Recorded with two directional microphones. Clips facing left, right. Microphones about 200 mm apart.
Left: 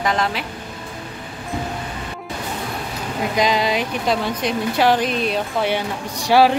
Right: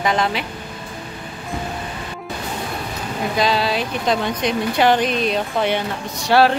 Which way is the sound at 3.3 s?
15° left (ahead or behind).